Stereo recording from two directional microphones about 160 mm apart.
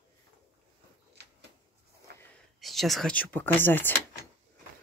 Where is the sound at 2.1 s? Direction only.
90° right.